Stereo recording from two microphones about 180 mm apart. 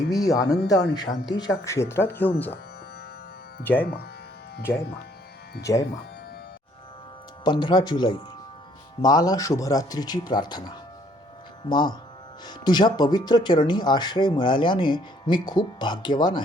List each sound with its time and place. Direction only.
0.1 s speech: 20° left (ahead or behind)
3.6 s speech: 10° left (ahead or behind)
5.7 s speech: 20° left (ahead or behind)
7.4 s speech: 25° left (ahead or behind)